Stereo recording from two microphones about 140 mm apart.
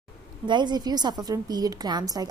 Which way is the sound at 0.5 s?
30° right (ahead or behind).